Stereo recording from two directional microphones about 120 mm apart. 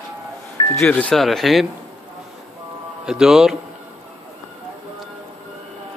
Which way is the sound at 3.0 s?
5° right (ahead or behind).